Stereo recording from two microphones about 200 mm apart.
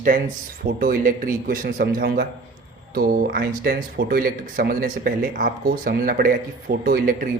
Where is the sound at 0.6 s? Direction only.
45° right (ahead or behind).